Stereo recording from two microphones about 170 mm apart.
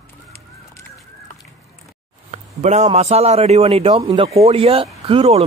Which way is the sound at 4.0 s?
20° right (ahead or behind).